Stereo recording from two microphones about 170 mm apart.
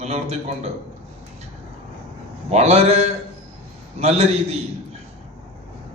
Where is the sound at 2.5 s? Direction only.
40° right (ahead or behind).